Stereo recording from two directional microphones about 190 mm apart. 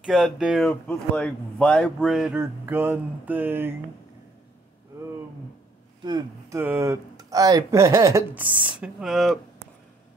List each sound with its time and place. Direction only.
0.0 s speech: centre (ahead or behind)
6.0 s speech: 20° right (ahead or behind); by 9.4 s centre (ahead or behind)